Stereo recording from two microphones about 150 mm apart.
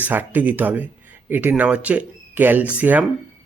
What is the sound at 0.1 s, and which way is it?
Speech, 10° right (ahead or behind).